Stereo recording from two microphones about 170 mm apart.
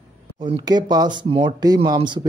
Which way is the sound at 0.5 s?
25° right (ahead or behind).